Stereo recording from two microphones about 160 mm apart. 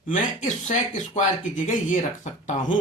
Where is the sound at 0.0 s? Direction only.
50° left (ahead or behind).